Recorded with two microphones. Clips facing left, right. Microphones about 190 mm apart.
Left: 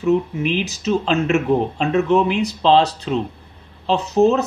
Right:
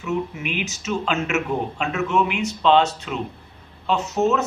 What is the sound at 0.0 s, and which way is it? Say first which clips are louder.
Speech: left 8 dB; 35° left (ahead or behind).